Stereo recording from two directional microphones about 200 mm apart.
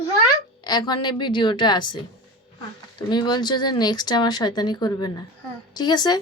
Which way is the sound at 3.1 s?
20° left (ahead or behind).